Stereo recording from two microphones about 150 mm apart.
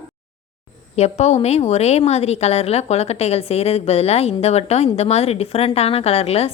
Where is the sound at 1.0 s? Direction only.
45° left (ahead or behind).